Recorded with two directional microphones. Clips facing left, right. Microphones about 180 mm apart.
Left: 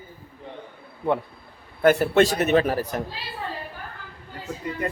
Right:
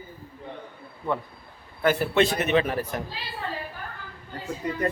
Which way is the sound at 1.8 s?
50° left (ahead or behind).